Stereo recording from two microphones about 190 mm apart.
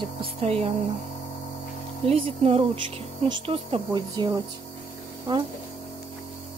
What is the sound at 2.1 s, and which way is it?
Speech, 30° right (ahead or behind).